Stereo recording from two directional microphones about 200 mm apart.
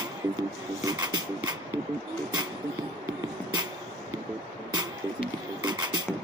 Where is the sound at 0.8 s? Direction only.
20° right (ahead or behind).